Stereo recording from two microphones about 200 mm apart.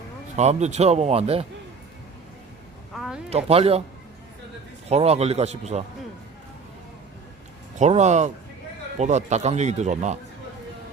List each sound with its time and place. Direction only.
0.3 s speech: 35° right (ahead or behind)
2.9 s a sound: centre (ahead or behind)
3.2 s speech: 30° right (ahead or behind)
4.9 s speech: 30° right (ahead or behind)
7.8 s speech: 35° right (ahead or behind)